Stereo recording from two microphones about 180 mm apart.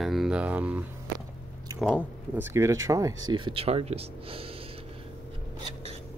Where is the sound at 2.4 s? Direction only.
15° right (ahead or behind); by 4.5 s 30° right (ahead or behind).